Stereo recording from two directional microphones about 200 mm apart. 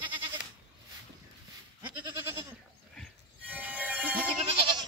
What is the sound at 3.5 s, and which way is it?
Train, 10° right (ahead or behind).